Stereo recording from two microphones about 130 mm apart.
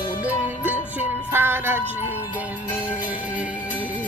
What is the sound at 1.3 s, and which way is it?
Music, 15° right (ahead or behind).